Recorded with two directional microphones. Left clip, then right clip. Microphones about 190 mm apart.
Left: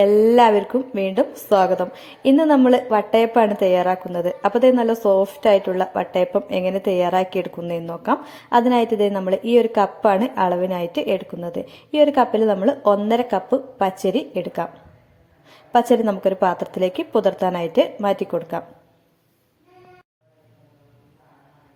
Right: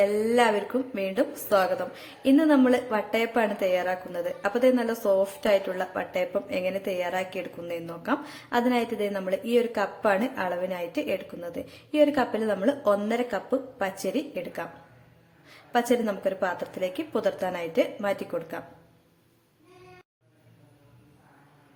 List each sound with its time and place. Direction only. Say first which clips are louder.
0.0 s a woman's voice: left 9 dB; 25° left (ahead or behind)